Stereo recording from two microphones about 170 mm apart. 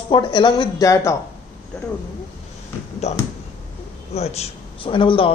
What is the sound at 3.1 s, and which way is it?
A man's voice, 40° left (ahead or behind).